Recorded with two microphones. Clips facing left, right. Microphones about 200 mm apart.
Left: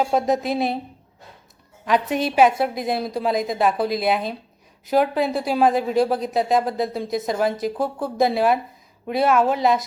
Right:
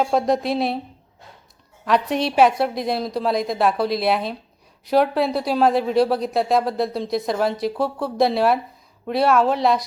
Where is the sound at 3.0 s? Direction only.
50° left (ahead or behind).